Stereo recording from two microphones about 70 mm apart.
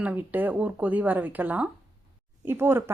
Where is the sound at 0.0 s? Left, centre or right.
Right.